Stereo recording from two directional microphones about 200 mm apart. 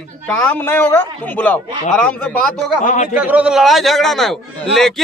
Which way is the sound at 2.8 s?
35° left (ahead or behind).